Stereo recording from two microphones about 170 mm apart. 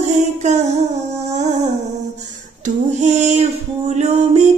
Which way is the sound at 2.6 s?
45° right (ahead or behind).